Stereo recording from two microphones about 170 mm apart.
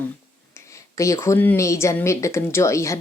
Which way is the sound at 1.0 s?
20° left (ahead or behind).